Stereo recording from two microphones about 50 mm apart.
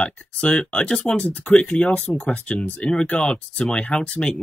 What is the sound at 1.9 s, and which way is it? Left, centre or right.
Speech, left.